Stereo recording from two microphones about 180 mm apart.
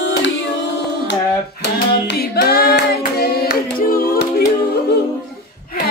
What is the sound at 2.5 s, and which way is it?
Hands, 60° left (ahead or behind).